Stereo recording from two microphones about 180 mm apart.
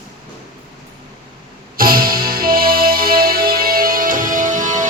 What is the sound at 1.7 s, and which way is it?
Music, 55° right (ahead or behind).